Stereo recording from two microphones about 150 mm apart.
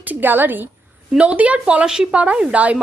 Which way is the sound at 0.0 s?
10° right (ahead or behind).